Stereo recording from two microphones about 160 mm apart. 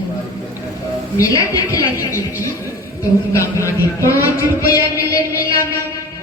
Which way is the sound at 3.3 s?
20° left (ahead or behind).